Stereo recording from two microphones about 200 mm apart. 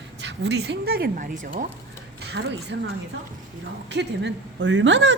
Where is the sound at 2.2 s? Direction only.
60° right (ahead or behind).